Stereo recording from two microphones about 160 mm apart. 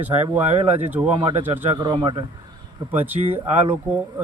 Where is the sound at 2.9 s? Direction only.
10° right (ahead or behind).